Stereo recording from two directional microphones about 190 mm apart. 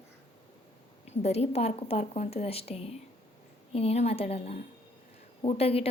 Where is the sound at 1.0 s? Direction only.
35° left (ahead or behind).